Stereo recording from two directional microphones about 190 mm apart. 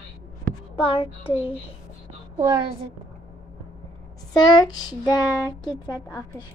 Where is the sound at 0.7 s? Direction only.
30° left (ahead or behind).